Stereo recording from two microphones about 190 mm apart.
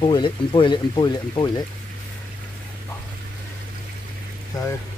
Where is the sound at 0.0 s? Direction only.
25° left (ahead or behind).